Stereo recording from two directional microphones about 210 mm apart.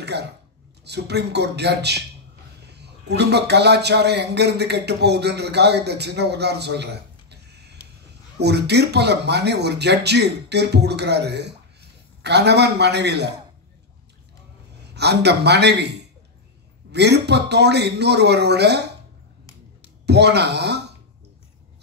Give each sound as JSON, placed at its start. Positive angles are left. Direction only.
{"t": 0.0, "sound": "a sound", "side_deg": -55}
{"t": 0.8, "sound": "speech", "side_deg": -50}
{"t": 15.0, "sound": "speech", "side_deg": -50}
{"t": 20.1, "sound": "speech", "side_deg": -50}